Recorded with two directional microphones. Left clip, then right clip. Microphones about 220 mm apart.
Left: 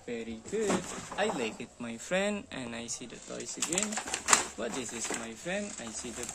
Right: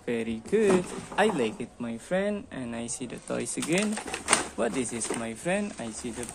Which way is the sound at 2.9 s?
25° right (ahead or behind).